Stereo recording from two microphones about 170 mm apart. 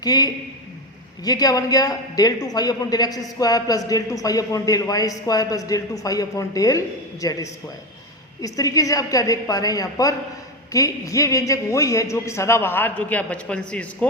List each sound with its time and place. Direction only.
0.0 s a man's voice: 25° left (ahead or behind); by 14.1 s 5° left (ahead or behind)